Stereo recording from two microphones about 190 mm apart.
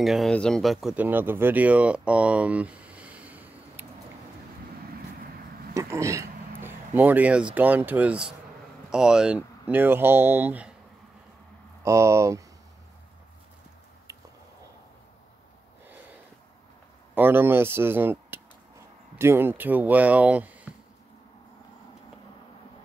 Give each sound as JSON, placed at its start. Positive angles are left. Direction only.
{"t": 0.0, "sound": "speech", "side_deg": 0}
{"t": 5.8, "sound": "speech", "side_deg": -15}
{"t": 11.8, "sound": "speech", "side_deg": -15}
{"t": 17.1, "sound": "speech", "side_deg": -10}